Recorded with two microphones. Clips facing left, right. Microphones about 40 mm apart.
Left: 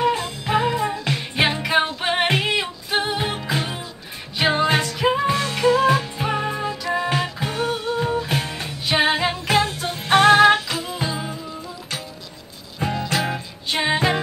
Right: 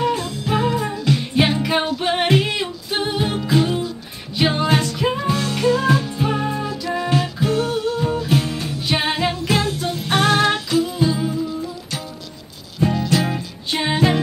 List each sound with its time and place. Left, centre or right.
0.0 s music: centre
1.9 s a capella: centre
3.2 s music: centre
8.8 s music: centre
12.9 s music: left
13.2 s music: centre